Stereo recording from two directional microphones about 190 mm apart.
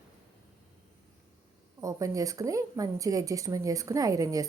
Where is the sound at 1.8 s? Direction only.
15° right (ahead or behind).